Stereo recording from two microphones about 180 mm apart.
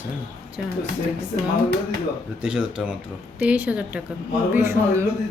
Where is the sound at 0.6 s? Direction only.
5° right (ahead or behind).